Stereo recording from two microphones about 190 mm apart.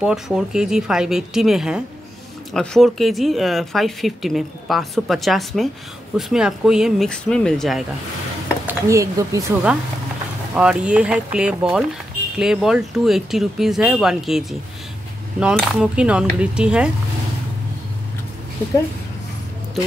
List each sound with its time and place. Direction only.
0.0 s speech: 5° right (ahead or behind)
8.6 s speech: 15° right (ahead or behind)
10.5 s speech: 5° right (ahead or behind)